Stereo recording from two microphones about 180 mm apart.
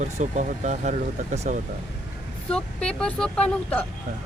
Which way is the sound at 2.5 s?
5° left (ahead or behind).